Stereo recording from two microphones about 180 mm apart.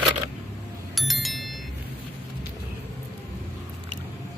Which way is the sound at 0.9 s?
Centre (ahead or behind).